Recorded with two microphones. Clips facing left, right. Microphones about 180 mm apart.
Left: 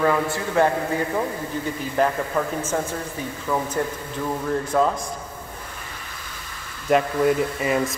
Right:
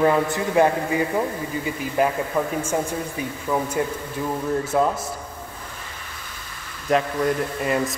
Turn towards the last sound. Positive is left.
turn(degrees=0)  # may be behind; listen again after turning